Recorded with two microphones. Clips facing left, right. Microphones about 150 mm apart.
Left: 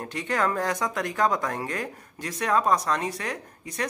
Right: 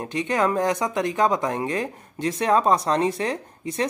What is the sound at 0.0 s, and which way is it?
Speech, 20° right (ahead or behind).